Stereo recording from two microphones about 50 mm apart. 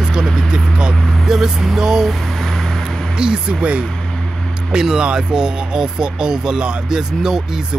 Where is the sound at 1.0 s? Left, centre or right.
Centre.